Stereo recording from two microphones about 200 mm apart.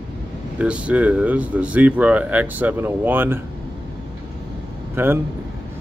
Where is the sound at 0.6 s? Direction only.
5° right (ahead or behind).